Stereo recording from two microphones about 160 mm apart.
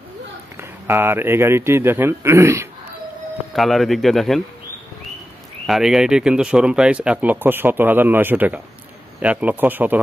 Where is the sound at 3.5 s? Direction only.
Centre (ahead or behind).